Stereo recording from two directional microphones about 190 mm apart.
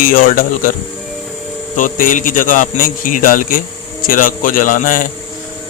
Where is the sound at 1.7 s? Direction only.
45° left (ahead or behind).